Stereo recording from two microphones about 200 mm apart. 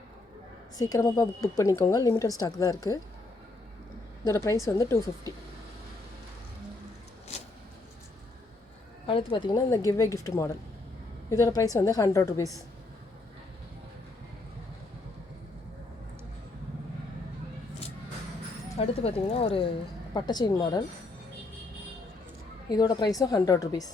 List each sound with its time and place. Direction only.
0.8 s a woman's voice: 20° left (ahead or behind)
4.3 s speech: 15° left (ahead or behind)
9.0 s speech: 25° left (ahead or behind)
18.8 s a woman's voice: 30° left (ahead or behind)
22.7 s a woman's voice: 20° left (ahead or behind)